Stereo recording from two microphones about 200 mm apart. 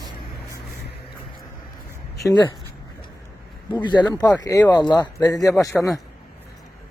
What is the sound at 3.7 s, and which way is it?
Speech, 20° left (ahead or behind).